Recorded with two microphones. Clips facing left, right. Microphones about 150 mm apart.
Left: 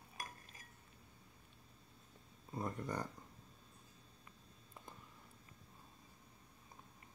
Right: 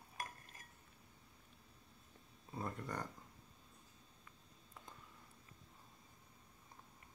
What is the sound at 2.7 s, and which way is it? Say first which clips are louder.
Speech: left 3 dB; 20° left (ahead or behind).